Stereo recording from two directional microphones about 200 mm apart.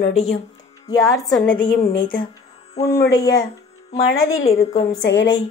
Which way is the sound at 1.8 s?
30° left (ahead or behind).